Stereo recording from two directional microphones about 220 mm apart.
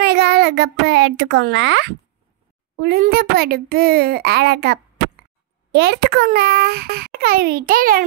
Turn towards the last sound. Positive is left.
turn(degrees=-40)  # may be behind; listen again after turning